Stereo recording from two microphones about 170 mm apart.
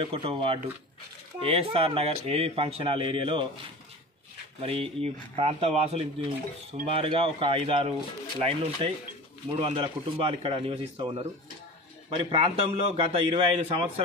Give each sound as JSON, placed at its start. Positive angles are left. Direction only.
{"t": 0.0, "sound": "speech", "side_deg": -30}
{"t": 4.6, "sound": "speech", "side_deg": -35}